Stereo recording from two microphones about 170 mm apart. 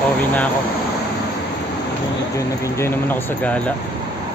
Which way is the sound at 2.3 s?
15° left (ahead or behind).